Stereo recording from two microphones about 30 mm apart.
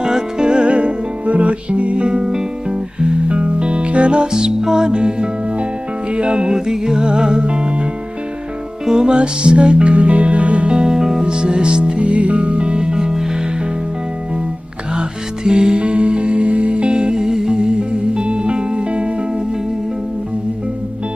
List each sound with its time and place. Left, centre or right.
0.0 s music: right
2.0 s music: right
3.0 s music: right
4.3 s music: right
10.7 s music: right
11.2 s music: right
14.9 s music: right
15.8 s music: right